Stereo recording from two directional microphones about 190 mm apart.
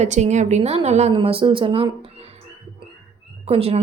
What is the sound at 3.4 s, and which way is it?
Speech, 30° right (ahead or behind).